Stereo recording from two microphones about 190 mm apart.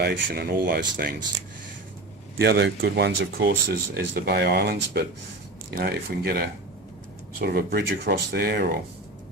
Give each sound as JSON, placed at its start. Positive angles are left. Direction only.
{"t": 0.0, "sound": "speech", "side_deg": -55}
{"t": 2.4, "sound": "speech", "side_deg": -60}